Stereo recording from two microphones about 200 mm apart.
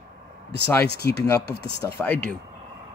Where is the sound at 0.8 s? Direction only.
55° left (ahead or behind).